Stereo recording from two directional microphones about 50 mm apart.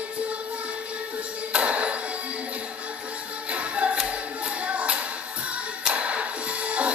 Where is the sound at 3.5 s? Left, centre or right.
Right.